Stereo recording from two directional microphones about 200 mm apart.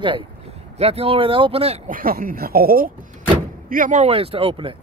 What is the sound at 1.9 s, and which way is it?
Speech, 45° right (ahead or behind).